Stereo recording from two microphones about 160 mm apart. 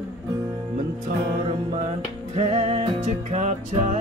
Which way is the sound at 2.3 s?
45° right (ahead or behind).